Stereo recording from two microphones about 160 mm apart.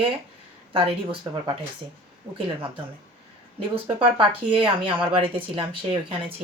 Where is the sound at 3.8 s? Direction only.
35° right (ahead or behind).